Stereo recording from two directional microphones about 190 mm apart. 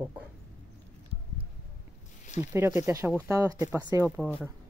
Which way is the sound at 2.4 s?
15° right (ahead or behind).